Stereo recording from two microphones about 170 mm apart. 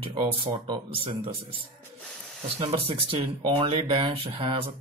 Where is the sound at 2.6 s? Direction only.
30° right (ahead or behind).